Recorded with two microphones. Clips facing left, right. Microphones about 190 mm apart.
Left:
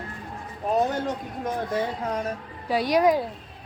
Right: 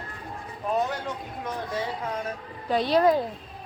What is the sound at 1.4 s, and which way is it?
Speech, 45° left (ahead or behind).